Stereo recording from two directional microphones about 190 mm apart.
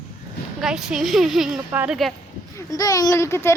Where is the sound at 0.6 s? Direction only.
5° right (ahead or behind).